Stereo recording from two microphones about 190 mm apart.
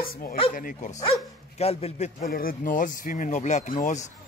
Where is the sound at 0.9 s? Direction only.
25° left (ahead or behind).